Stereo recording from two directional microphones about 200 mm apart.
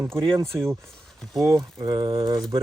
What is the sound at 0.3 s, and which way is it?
Speech, 15° right (ahead or behind).